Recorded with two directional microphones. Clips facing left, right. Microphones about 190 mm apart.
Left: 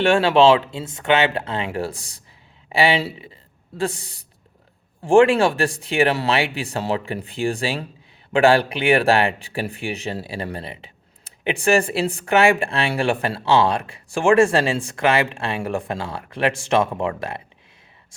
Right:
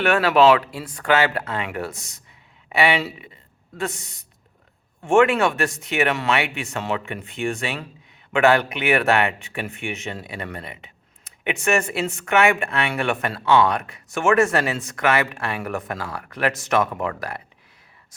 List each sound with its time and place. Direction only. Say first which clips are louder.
0.0 s speech: left 2 dB; 30° left (ahead or behind)